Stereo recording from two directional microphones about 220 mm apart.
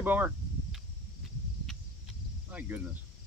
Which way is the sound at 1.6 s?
5° right (ahead or behind).